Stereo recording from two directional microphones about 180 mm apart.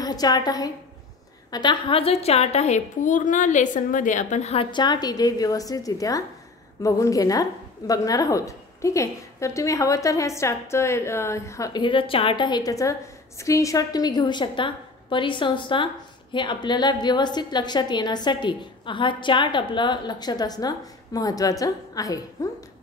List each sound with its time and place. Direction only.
0.0 s a woman's voice: 20° left (ahead or behind)